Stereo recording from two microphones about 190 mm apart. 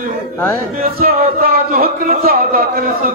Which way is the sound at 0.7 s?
50° right (ahead or behind).